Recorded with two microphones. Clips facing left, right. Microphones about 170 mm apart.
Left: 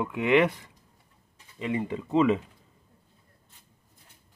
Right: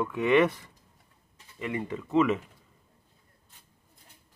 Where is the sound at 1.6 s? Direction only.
20° left (ahead or behind).